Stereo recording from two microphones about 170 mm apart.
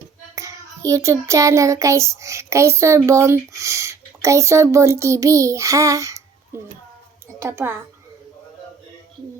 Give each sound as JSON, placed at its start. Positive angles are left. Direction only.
{"t": 0.9, "sound": "child singing", "side_deg": -20}
{"t": 3.1, "sound": "speech", "side_deg": -15}
{"t": 7.4, "sound": "child singing", "side_deg": -15}